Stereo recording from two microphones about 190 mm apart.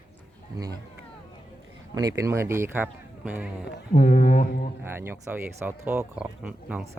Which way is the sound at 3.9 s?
40° left (ahead or behind).